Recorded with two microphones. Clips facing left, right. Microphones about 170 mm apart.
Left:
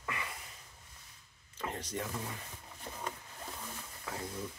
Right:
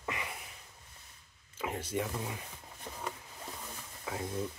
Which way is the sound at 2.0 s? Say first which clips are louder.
Right 5 dB; 15° right (ahead or behind).